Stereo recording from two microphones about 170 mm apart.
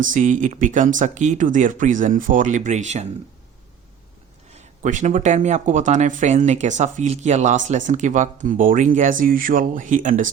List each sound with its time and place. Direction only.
0.0 s speech: 50° right (ahead or behind)
4.5 s speech: 45° right (ahead or behind)